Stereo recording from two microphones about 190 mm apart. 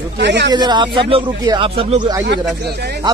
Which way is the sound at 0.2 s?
65° right (ahead or behind).